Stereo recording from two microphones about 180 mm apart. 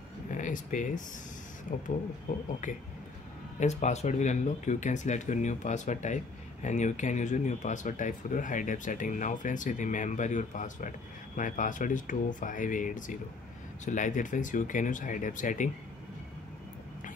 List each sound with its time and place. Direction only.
0.3 s speech: 45° left (ahead or behind)
3.5 s speech: 40° left (ahead or behind)